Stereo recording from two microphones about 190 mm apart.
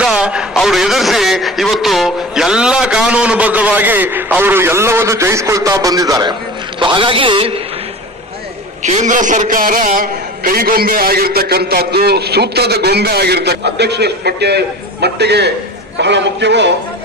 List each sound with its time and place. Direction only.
0.0 s a man's voice: 5° right (ahead or behind); by 7.5 s 30° right (ahead or behind)
8.8 s a man's voice: 40° right (ahead or behind); by 16.7 s 65° right (ahead or behind)